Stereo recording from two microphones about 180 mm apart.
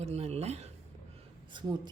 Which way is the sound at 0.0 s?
35° right (ahead or behind).